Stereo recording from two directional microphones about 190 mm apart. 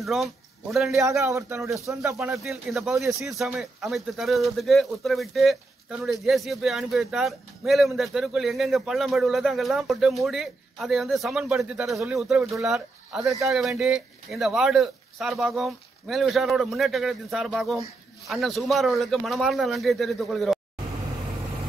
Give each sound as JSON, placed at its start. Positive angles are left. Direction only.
{"t": 0.0, "sound": "speech", "side_deg": 0}
{"t": 0.9, "sound": "speech", "side_deg": -15}
{"t": 2.1, "sound": "speech", "side_deg": 0}